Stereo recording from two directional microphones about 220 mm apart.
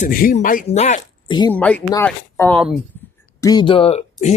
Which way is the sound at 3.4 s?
20° left (ahead or behind).